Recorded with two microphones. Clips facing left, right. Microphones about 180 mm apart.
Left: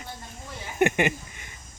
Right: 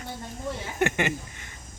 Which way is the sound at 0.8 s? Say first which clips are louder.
Left 4 dB; 15° left (ahead or behind).